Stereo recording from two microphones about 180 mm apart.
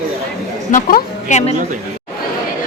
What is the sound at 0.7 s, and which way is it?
Speech, 50° left (ahead or behind).